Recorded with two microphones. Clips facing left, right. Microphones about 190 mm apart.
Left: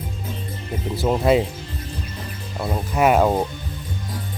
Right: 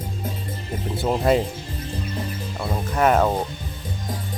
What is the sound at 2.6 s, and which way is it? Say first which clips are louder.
Speech: left 2 dB; 10° left (ahead or behind).